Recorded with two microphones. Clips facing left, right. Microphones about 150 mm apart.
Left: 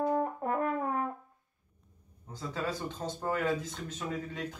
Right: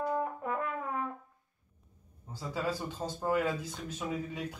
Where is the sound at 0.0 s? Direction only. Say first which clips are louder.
Left 3 dB; 35° left (ahead or behind).